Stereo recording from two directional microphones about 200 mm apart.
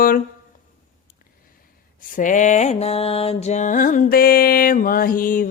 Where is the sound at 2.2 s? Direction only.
40° left (ahead or behind).